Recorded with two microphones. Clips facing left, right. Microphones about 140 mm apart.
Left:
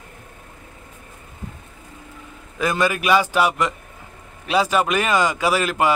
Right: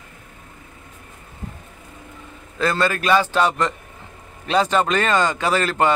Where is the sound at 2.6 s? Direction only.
15° left (ahead or behind).